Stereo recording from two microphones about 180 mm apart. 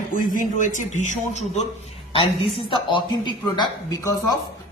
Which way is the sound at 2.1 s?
30° left (ahead or behind).